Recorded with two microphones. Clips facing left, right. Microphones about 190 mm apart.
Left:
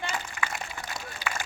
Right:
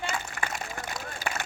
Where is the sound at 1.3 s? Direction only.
40° right (ahead or behind).